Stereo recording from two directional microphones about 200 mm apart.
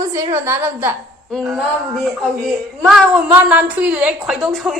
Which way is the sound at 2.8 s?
5° right (ahead or behind).